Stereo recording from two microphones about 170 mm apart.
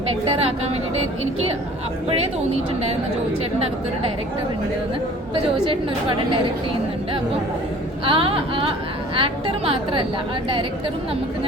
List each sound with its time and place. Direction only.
0.1 s a woman's voice: 30° right (ahead or behind)
5.3 s a woman's voice: 30° right (ahead or behind)
8.0 s a woman's voice: 30° right (ahead or behind)